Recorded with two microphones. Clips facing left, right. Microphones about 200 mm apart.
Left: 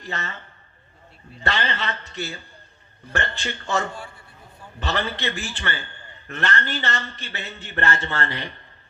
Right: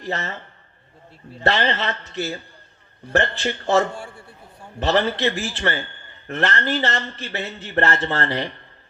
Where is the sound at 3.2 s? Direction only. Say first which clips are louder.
Right 7 dB; 35° right (ahead or behind).